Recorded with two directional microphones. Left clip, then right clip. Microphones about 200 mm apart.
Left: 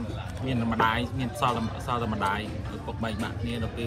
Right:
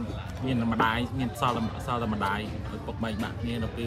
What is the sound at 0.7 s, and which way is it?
A man's voice, 10° right (ahead or behind).